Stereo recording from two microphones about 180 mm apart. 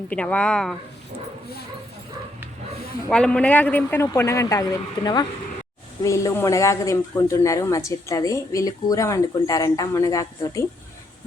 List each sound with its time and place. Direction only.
0.1 s speech: 5° left (ahead or behind)
3.1 s speech: 5° left (ahead or behind)